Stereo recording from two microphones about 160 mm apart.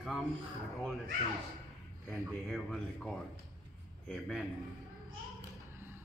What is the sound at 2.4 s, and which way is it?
Speech, centre (ahead or behind).